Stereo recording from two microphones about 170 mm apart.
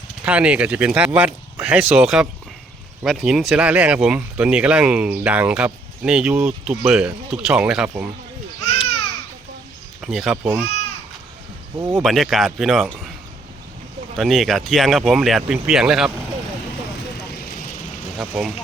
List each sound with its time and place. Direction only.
0.3 s speech: 5° right (ahead or behind)
10.0 s speech: centre (ahead or behind)
10.4 s speech: 15° right (ahead or behind)
11.8 s speech: 15° right (ahead or behind)
12.0 s speech: centre (ahead or behind)
14.2 s speech: centre (ahead or behind)
18.2 s speech: 5° right (ahead or behind)